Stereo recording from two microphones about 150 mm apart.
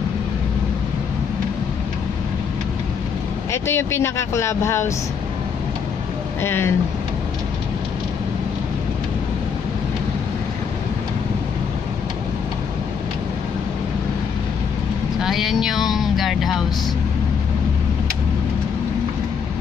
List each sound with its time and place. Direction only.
3.5 s speech: 15° left (ahead or behind)
6.4 s speech: 15° left (ahead or behind)
15.2 s a sound: centre (ahead or behind)